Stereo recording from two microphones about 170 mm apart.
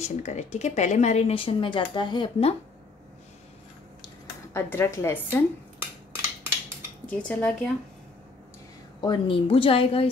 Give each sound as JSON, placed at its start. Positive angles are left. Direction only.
{"t": 0.0, "sound": "speech", "side_deg": 40}
{"t": 4.6, "sound": "a woman's voice", "side_deg": 15}
{"t": 7.1, "sound": "speech", "side_deg": 5}
{"t": 9.0, "sound": "speech", "side_deg": 30}